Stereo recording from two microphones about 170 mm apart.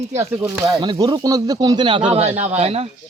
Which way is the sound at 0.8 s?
25° right (ahead or behind).